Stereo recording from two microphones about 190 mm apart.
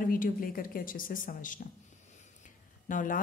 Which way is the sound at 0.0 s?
45° left (ahead or behind).